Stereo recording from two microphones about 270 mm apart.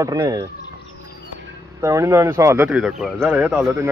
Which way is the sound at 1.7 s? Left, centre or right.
Centre.